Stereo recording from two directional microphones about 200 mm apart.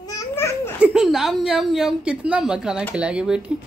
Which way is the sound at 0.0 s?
15° left (ahead or behind).